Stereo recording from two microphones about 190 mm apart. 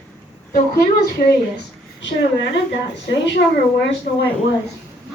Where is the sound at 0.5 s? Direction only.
55° left (ahead or behind).